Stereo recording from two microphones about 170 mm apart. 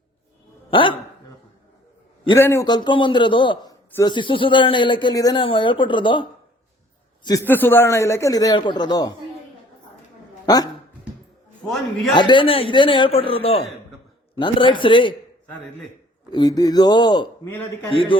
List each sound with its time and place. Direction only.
0.7 s speech: 30° left (ahead or behind)
2.3 s speech: 15° left (ahead or behind)
7.4 s speech: 10° left (ahead or behind)
10.4 s speech: 20° left (ahead or behind)
12.1 s a man's voice: 25° left (ahead or behind)
16.3 s speech: 25° left (ahead or behind)
17.5 s a man's voice: 15° left (ahead or behind)
17.9 s a man's voice: 30° left (ahead or behind)